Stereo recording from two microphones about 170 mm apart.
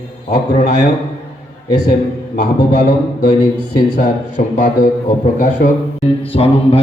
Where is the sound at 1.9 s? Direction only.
60° left (ahead or behind).